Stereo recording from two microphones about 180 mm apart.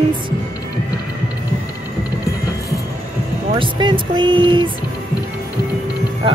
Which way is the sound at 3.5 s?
25° right (ahead or behind).